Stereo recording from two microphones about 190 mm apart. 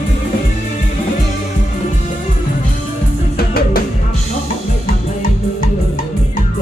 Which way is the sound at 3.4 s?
55° left (ahead or behind).